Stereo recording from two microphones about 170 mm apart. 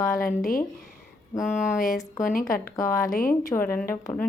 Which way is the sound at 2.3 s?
55° left (ahead or behind).